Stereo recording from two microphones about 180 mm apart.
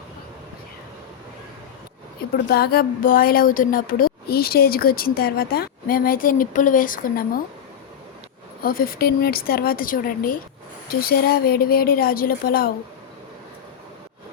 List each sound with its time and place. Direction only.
2.3 s speech: 60° left (ahead or behind)
8.6 s a woman's voice: 55° left (ahead or behind)